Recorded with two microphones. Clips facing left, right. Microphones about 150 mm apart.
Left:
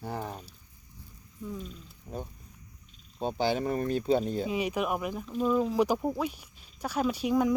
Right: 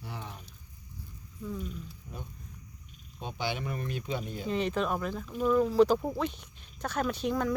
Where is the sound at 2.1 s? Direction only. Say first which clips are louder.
Left 6 dB; 35° left (ahead or behind).